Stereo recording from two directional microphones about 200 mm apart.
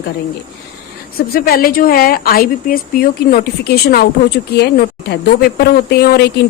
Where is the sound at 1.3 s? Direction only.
50° left (ahead or behind).